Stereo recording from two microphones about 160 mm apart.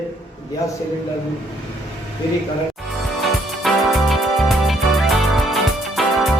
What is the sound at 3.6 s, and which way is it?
Music, centre (ahead or behind).